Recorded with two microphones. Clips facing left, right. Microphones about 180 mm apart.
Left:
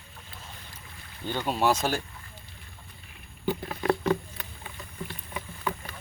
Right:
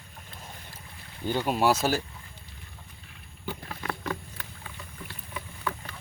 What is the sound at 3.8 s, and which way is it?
Patter, 30° left (ahead or behind).